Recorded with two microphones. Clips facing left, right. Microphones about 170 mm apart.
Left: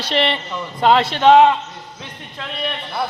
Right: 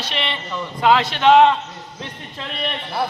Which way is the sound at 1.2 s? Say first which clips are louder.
Left 2 dB; 15° left (ahead or behind).